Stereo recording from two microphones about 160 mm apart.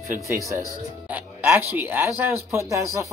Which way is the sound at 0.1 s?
55° right (ahead or behind).